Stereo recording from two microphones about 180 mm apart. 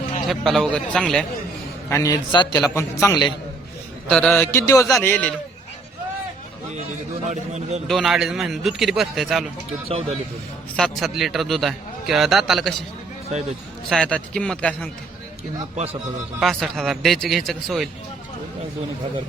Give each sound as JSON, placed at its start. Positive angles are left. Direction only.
{"t": 0.3, "sound": "a man's voice", "side_deg": 0}
{"t": 1.9, "sound": "a man's voice", "side_deg": 20}
{"t": 2.6, "sound": "music", "side_deg": 15}
{"t": 4.1, "sound": "music", "side_deg": 5}
{"t": 7.3, "sound": "a man's voice", "side_deg": -40}
{"t": 7.9, "sound": "a man's voice", "side_deg": 0}
{"t": 10.8, "sound": "a man's voice", "side_deg": 0}
{"t": 13.9, "sound": "a man's voice", "side_deg": 5}
{"t": 15.7, "sound": "a man's voice", "side_deg": -35}
{"t": 16.4, "sound": "a man's voice", "side_deg": 0}